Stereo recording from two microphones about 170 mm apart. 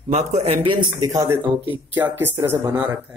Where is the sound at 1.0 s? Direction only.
20° right (ahead or behind).